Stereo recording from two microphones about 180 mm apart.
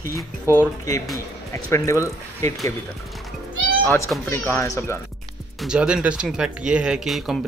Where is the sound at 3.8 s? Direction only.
15° left (ahead or behind).